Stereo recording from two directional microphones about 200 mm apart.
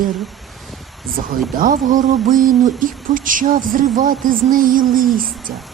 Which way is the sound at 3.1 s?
40° right (ahead or behind).